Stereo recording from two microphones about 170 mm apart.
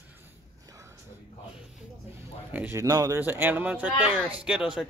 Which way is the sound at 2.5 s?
10° right (ahead or behind).